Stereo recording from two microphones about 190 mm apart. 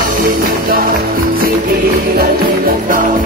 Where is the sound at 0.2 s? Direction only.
50° right (ahead or behind).